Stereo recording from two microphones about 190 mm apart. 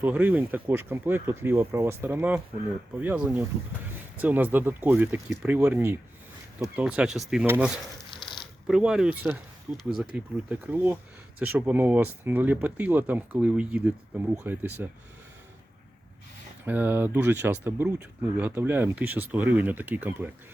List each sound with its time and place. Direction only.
0.0 s speech: 10° right (ahead or behind)
8.2 s zipper: 25° left (ahead or behind)
8.6 s speech: 5° right (ahead or behind)
16.6 s speech: 10° right (ahead or behind)